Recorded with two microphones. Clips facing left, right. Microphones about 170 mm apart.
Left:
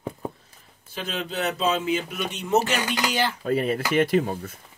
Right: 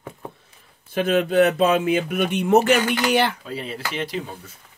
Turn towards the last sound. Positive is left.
turn(degrees=50)  # may be behind; listen again after turning